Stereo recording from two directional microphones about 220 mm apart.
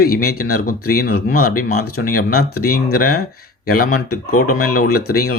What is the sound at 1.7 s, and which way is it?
Speech, 90° left.